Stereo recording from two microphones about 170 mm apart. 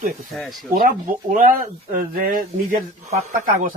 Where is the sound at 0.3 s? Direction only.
Centre (ahead or behind).